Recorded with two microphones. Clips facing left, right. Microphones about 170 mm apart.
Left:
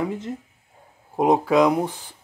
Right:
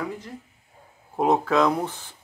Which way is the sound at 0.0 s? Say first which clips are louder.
Left 5 dB; 25° left (ahead or behind).